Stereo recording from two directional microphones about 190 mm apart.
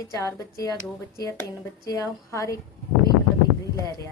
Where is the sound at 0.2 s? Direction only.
15° left (ahead or behind).